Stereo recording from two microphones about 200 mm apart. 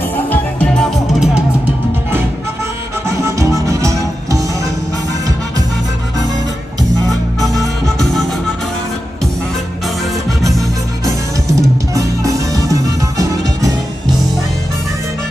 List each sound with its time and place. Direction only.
0.3 s music: 5° left (ahead or behind)
3.1 s music: 15° right (ahead or behind)
7.3 s music: 15° right (ahead or behind)
11.4 s music: 15° right (ahead or behind)